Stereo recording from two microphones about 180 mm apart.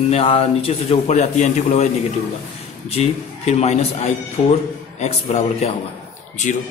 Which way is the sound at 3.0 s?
35° left (ahead or behind).